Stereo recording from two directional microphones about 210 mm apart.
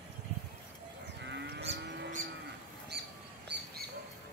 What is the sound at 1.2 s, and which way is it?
Livestock, 55° right (ahead or behind).